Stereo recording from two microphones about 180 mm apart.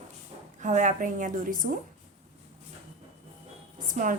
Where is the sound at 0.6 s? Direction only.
45° right (ahead or behind).